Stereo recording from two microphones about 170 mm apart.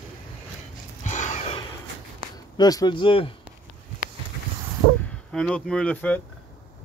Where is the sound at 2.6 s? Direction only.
25° left (ahead or behind).